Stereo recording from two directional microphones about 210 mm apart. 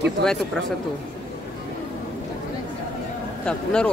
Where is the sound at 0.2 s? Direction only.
5° left (ahead or behind).